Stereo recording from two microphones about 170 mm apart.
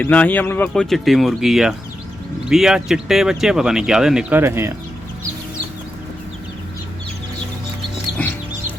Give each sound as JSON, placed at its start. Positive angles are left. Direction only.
{"t": 0.0, "sound": "speech", "side_deg": 10}